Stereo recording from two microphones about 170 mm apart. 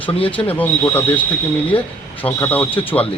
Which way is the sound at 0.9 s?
10° left (ahead or behind).